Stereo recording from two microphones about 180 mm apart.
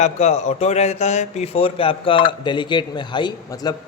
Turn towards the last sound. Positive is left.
turn(degrees=20)  # may be behind; listen again after turning